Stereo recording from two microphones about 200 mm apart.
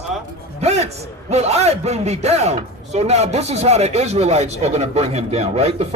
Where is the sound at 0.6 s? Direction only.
35° right (ahead or behind).